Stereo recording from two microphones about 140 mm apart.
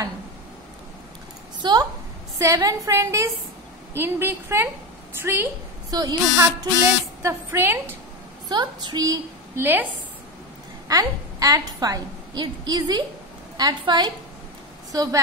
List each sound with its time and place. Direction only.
1.6 s a sound: 30° right (ahead or behind)
2.3 s a woman's voice: 25° right (ahead or behind)
5.9 s a woman's voice: 30° right (ahead or behind)
7.2 s a woman's voice: 15° right (ahead or behind)
8.5 s a woman's voice: 30° right (ahead or behind); by 9.8 s 15° right (ahead or behind)
10.9 s a woman's voice: 25° right (ahead or behind)